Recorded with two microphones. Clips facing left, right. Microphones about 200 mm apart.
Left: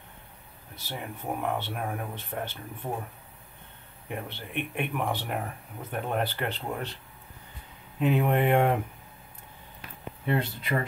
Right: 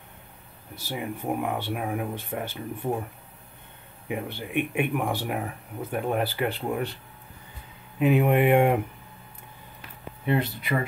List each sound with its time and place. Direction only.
0.7 s speech: 10° right (ahead or behind)
4.1 s speech: 10° right (ahead or behind)
8.0 s speech: 10° right (ahead or behind)
10.2 s speech: 15° right (ahead or behind)